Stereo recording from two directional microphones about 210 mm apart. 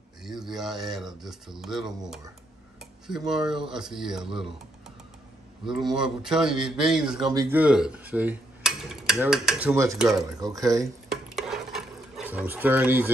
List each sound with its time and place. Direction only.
0.2 s a man's voice: centre (ahead or behind)
3.3 s a man's voice: centre (ahead or behind)
5.7 s a man's voice: centre (ahead or behind)
11.1 s stir: centre (ahead or behind)